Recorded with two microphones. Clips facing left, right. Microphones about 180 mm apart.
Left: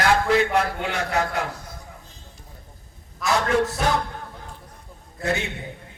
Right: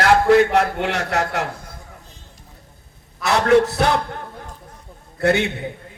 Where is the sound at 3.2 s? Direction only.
70° right (ahead or behind).